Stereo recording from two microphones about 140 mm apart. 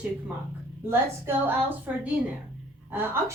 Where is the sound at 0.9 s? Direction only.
15° right (ahead or behind).